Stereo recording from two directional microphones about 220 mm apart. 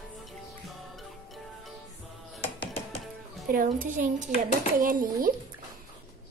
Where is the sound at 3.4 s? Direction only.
40° right (ahead or behind).